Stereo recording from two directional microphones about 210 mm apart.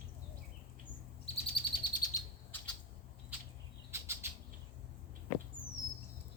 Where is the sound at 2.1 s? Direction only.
10° left (ahead or behind).